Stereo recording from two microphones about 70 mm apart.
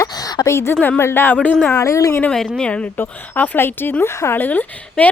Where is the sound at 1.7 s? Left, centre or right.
Left.